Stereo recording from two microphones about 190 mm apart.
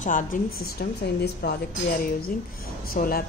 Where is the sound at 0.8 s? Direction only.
55° left (ahead or behind).